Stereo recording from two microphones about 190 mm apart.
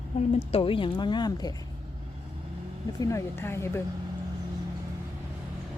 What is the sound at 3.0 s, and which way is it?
Speech, 15° left (ahead or behind).